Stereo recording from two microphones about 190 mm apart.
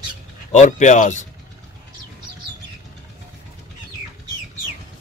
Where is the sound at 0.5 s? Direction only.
40° left (ahead or behind).